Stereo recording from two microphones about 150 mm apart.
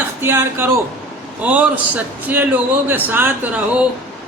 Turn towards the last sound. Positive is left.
turn(degrees=-10)  # may be behind; listen again after turning